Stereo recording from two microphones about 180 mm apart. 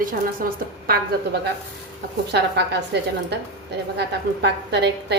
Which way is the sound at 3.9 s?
70° right (ahead or behind).